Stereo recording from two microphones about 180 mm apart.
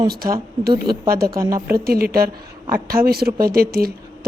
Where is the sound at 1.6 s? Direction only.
55° right (ahead or behind).